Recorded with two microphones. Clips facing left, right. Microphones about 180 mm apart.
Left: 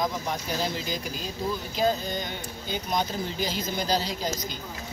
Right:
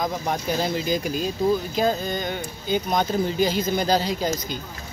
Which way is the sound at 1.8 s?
55° right (ahead or behind).